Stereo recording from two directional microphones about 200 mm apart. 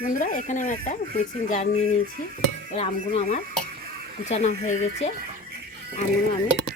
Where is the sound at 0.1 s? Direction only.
40° left (ahead or behind).